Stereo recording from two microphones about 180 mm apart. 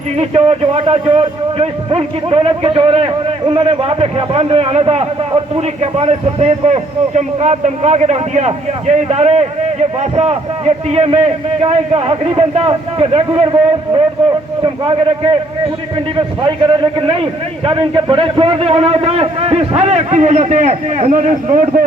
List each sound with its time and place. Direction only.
0.2 s a man's voice: 35° right (ahead or behind)
17.7 s a man's voice: 30° right (ahead or behind); by 21.8 s 45° right (ahead or behind)